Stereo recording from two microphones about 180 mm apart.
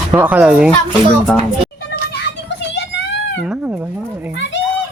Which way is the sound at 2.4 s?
75° left (ahead or behind).